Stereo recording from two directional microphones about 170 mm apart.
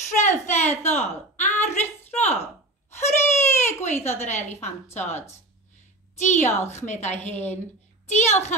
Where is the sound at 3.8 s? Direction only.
45° left (ahead or behind).